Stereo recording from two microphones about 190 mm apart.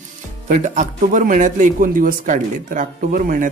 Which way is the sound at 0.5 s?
40° right (ahead or behind).